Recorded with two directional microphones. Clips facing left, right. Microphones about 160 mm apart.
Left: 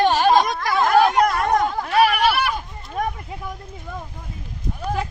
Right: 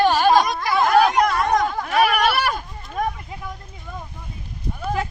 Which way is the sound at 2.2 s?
50° right (ahead or behind).